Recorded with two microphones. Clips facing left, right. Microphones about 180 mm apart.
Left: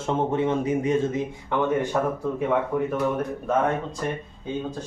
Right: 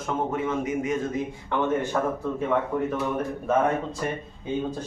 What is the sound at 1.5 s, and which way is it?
Speech, 15° left (ahead or behind).